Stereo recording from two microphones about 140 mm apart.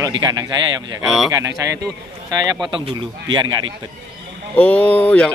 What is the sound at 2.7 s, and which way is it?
Speech, 35° right (ahead or behind).